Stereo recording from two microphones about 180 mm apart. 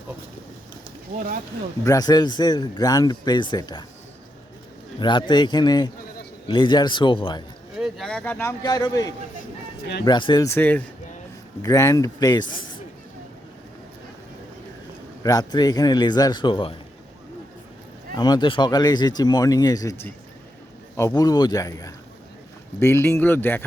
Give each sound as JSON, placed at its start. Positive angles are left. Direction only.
{"t": 1.8, "sound": "a man's voice", "side_deg": 20}
{"t": 4.9, "sound": "a man's voice", "side_deg": 25}
{"t": 7.8, "sound": "a man's voice", "side_deg": 0}
{"t": 15.2, "sound": "a man's voice", "side_deg": 20}
{"t": 18.1, "sound": "a man's voice", "side_deg": 20}